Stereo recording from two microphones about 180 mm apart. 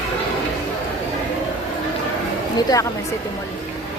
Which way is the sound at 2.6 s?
20° left (ahead or behind).